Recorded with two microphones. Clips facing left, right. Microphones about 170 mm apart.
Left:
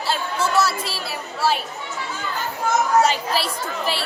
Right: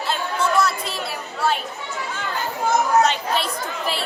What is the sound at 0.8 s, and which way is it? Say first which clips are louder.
Speech: right 1 dB; 5° left (ahead or behind).